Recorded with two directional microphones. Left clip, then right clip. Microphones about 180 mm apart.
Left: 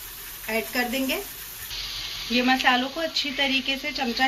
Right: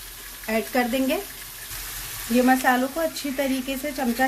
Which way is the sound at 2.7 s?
30° right (ahead or behind).